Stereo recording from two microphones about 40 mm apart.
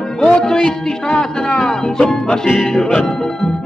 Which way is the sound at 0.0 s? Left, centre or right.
Centre.